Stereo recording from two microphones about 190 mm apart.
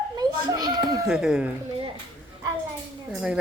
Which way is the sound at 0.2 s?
20° right (ahead or behind).